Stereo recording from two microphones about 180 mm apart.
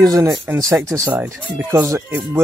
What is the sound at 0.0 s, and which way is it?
Speech, 20° right (ahead or behind).